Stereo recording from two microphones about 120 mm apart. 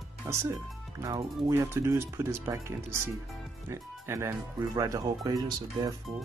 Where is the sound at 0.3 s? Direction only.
25° right (ahead or behind).